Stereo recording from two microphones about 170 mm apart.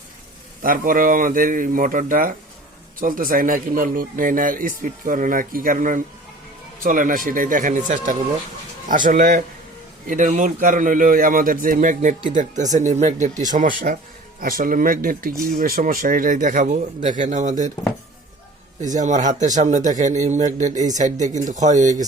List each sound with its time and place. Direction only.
0.6 s a man's voice: 55° right (ahead or behind)
18.9 s a man's voice: 45° right (ahead or behind)